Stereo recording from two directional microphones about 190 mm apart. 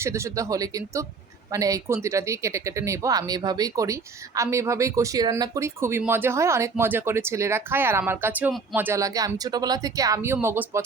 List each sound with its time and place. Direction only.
0.0 s speech: 15° right (ahead or behind)